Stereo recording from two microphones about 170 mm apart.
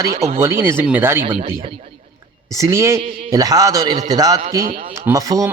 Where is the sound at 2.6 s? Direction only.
15° right (ahead or behind).